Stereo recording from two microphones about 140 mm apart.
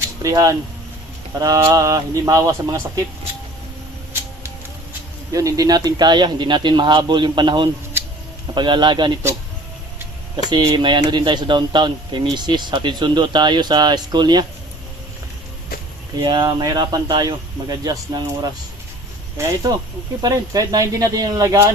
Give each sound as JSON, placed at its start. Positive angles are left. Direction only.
{"t": 0.2, "sound": "speech", "side_deg": -25}
{"t": 5.3, "sound": "speech", "side_deg": -25}
{"t": 10.5, "sound": "speech", "side_deg": -30}
{"t": 16.2, "sound": "speech", "side_deg": -30}